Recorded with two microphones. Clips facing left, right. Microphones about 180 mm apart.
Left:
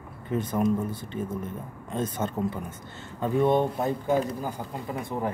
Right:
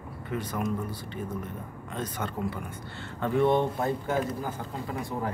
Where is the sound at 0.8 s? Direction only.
50° left (ahead or behind).